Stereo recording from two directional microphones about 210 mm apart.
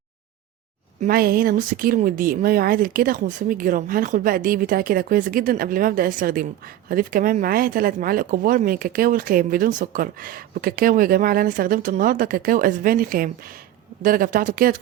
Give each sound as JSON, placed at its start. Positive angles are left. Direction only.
{"t": 1.0, "sound": "speech", "side_deg": -45}